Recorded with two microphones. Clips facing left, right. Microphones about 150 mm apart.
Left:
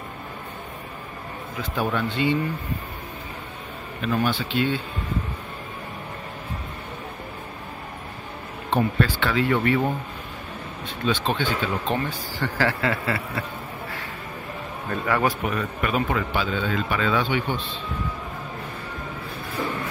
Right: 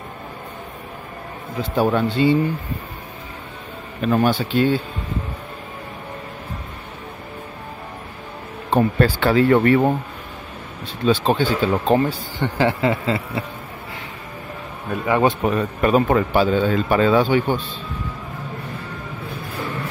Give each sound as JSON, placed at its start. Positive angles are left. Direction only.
{"t": 1.6, "sound": "a man's voice", "side_deg": -30}
{"t": 4.0, "sound": "speech", "side_deg": -45}
{"t": 8.6, "sound": "speech", "side_deg": -40}
{"t": 11.1, "sound": "a man's voice", "side_deg": -35}
{"t": 12.4, "sound": "speech", "side_deg": -20}
{"t": 15.0, "sound": "speech", "side_deg": -20}
{"t": 15.4, "sound": "a man's voice", "side_deg": -35}